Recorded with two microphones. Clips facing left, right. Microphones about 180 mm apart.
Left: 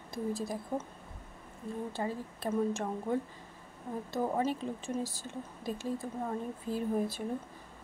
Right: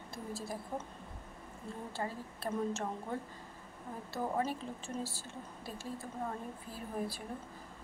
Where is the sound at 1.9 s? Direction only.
15° left (ahead or behind).